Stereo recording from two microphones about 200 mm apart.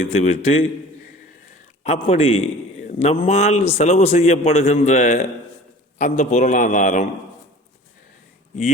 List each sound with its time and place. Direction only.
0.0 s a man's voice: 30° left (ahead or behind)
1.8 s a man's voice: 30° left (ahead or behind)